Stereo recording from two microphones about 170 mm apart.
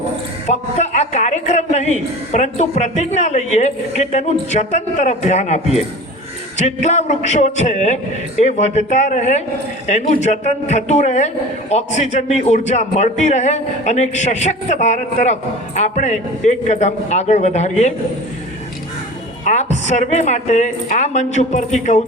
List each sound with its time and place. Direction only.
0.4 s a man's voice: 40° left (ahead or behind)
6.6 s a man's voice: 45° left (ahead or behind)
19.5 s a man's voice: 40° left (ahead or behind)